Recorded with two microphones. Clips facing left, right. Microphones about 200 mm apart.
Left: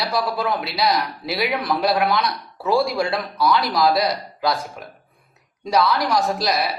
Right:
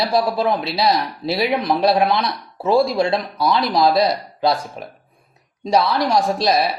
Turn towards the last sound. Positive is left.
turn(degrees=-25)  # may be behind; listen again after turning